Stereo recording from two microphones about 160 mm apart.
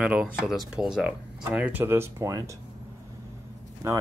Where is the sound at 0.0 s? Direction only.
5° right (ahead or behind).